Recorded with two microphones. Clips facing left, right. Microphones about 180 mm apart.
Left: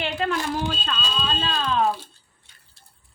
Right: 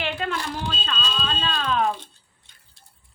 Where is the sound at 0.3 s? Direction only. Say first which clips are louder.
Left 4 dB; 40° left (ahead or behind).